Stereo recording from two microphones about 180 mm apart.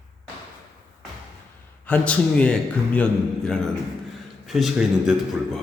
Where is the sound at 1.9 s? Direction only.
5° left (ahead or behind).